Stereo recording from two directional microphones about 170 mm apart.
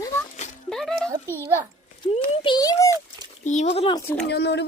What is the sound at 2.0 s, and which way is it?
Speech, 30° left (ahead or behind).